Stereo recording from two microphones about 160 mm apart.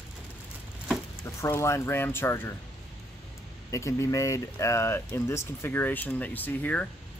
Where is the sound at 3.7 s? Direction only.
20° left (ahead or behind).